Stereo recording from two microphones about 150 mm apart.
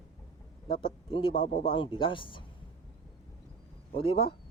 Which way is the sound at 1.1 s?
35° left (ahead or behind).